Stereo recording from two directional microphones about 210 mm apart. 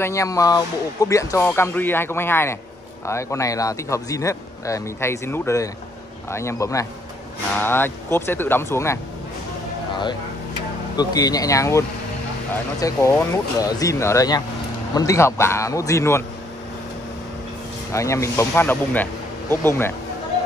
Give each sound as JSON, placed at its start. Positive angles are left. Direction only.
{"t": 0.0, "sound": "speech", "side_deg": 15}
{"t": 11.0, "sound": "speech", "side_deg": 20}
{"t": 12.8, "sound": "speech", "side_deg": 15}
{"t": 17.9, "sound": "speech", "side_deg": 15}